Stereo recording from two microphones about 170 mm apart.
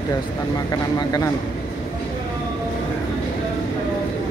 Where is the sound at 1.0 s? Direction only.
20° left (ahead or behind).